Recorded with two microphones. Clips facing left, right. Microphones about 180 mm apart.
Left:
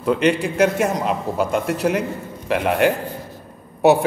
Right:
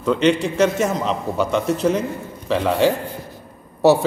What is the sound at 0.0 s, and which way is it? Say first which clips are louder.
Speech: right 1 dB; 10° left (ahead or behind).